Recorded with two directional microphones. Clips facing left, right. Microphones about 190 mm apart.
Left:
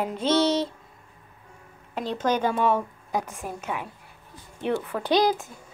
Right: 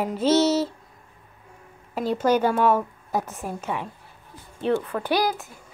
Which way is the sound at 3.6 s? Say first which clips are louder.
Right 2 dB; 5° left (ahead or behind).